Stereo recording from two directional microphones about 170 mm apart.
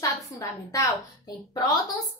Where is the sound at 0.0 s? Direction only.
20° left (ahead or behind).